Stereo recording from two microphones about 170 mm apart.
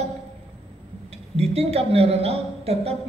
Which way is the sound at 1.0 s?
35° right (ahead or behind).